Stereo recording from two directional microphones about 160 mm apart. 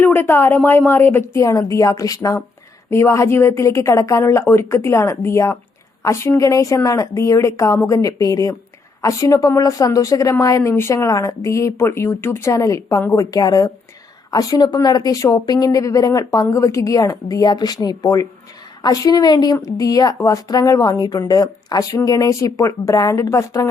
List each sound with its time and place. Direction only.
0.0 s a woman's voice: 15° left (ahead or behind)